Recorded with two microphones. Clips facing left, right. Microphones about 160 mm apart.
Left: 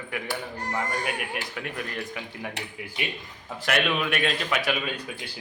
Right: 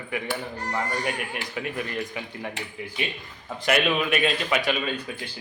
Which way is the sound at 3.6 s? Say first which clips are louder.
Right 3 dB; centre (ahead or behind).